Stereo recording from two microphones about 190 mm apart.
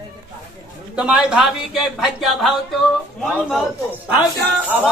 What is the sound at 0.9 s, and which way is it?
Speech, 5° right (ahead or behind).